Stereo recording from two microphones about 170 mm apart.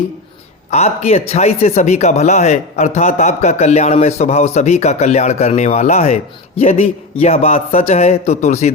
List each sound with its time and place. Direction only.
0.7 s a man's voice: 40° left (ahead or behind)